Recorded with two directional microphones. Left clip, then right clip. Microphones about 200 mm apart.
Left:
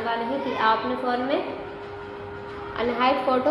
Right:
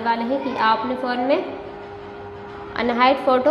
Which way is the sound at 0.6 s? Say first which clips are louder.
Right 2 dB; 40° right (ahead or behind).